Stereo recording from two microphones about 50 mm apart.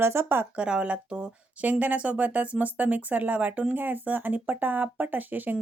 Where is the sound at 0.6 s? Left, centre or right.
Right.